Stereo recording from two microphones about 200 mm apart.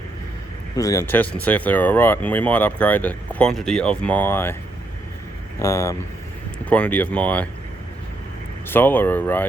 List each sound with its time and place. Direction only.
0.8 s speech: 15° left (ahead or behind)
5.5 s speech: 15° left (ahead or behind)
8.6 s speech: 10° left (ahead or behind)